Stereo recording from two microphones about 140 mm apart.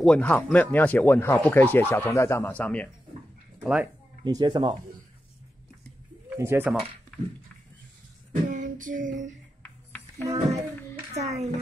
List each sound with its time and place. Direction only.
0.0 s speech: 10° left (ahead or behind)
3.6 s speech: 5° right (ahead or behind)
4.2 s speech: 30° right (ahead or behind)
6.3 s speech: 20° right (ahead or behind)
8.5 s child singing: 70° right (ahead or behind)
9.6 s a sound: 10° left (ahead or behind)
10.2 s a child's voice: 25° right (ahead or behind)
11.1 s a child's voice: 55° right (ahead or behind)